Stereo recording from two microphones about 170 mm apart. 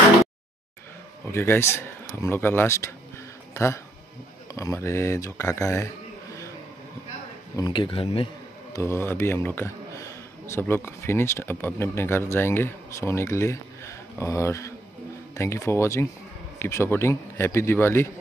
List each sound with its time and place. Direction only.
1.2 s speech: 15° left (ahead or behind)
7.5 s speech: 25° left (ahead or behind)
8.7 s speech: 15° left (ahead or behind)